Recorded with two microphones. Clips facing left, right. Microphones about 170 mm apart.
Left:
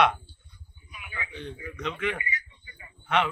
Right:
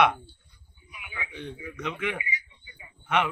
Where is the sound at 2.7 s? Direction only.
15° right (ahead or behind).